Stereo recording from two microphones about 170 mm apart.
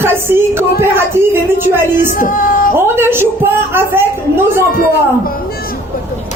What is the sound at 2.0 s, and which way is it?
Speech, 50° left (ahead or behind).